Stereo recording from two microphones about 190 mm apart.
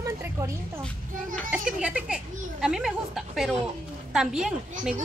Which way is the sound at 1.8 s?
5° right (ahead or behind).